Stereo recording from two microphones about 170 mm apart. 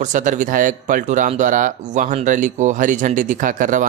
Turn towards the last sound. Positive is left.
turn(degrees=-50)  # may be behind; listen again after turning